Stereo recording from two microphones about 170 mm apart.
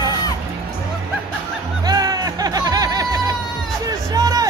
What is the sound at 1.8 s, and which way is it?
Music, 20° right (ahead or behind).